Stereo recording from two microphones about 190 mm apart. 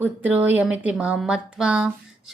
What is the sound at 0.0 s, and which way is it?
Speech, 10° right (ahead or behind).